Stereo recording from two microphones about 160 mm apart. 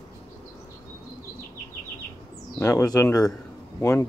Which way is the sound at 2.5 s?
15° left (ahead or behind).